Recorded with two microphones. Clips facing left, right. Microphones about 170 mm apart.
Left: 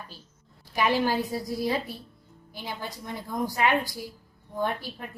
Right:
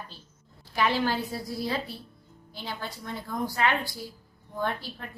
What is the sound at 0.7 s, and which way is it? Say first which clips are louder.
A woman's voice: left 2 dB; 15° left (ahead or behind).